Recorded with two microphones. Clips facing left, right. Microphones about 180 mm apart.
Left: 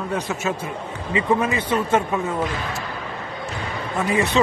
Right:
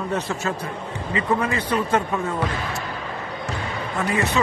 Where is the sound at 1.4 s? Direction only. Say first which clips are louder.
Left 1 dB; 25° left (ahead or behind).